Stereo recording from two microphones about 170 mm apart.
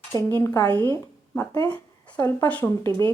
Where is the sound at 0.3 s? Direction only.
15° left (ahead or behind).